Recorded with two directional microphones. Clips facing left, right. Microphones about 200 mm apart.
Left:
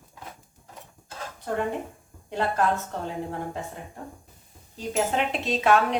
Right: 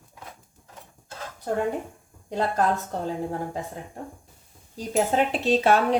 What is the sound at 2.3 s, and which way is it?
Speech, 40° right (ahead or behind).